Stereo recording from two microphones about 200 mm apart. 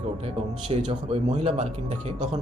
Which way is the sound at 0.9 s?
30° right (ahead or behind).